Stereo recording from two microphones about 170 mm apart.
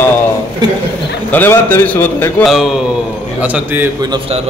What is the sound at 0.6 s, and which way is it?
Speech, 25° right (ahead or behind).